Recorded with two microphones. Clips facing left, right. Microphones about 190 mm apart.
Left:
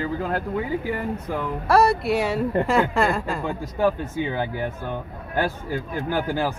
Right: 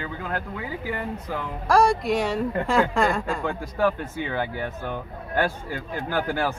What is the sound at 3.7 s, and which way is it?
Speech, 15° left (ahead or behind).